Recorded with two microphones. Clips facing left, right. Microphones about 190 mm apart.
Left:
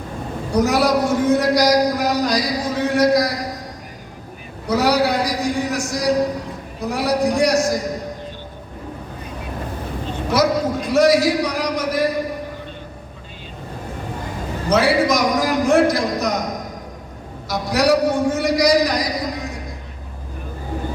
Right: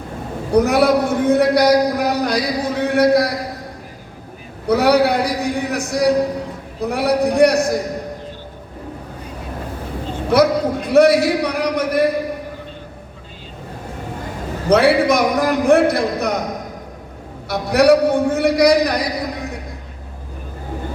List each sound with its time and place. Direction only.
0.5 s a man's voice: 60° right (ahead or behind)
4.6 s a man's voice: 60° right (ahead or behind)
10.2 s a man's voice: 60° right (ahead or behind)
14.7 s a man's voice: 60° right (ahead or behind)
17.5 s a man's voice: 60° right (ahead or behind)